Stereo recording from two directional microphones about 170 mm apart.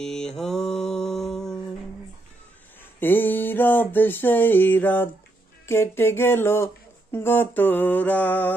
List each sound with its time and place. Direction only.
0.0 s mantra: 5° left (ahead or behind)
3.0 s speech: 10° left (ahead or behind)